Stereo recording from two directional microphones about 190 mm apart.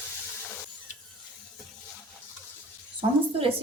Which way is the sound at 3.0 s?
30° right (ahead or behind).